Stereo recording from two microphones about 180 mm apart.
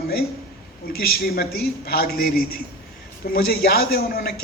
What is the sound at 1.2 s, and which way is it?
Speech, 60° left (ahead or behind).